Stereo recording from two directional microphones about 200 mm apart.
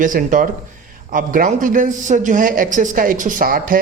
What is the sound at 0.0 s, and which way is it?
A woman's voice, 40° right (ahead or behind).